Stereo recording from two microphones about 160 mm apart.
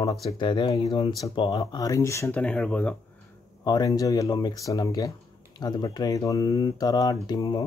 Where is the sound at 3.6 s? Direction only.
25° left (ahead or behind).